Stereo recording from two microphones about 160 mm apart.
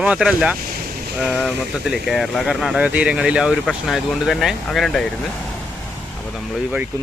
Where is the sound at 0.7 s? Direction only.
65° right (ahead or behind).